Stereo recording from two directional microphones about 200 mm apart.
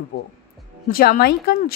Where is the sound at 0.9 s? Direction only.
50° left (ahead or behind).